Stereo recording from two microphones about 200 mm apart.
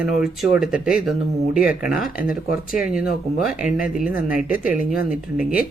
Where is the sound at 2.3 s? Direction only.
45° left (ahead or behind).